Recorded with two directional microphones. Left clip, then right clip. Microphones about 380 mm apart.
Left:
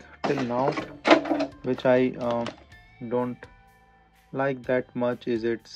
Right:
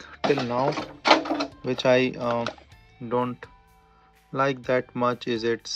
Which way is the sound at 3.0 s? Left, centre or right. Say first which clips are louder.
Right 2 dB; right.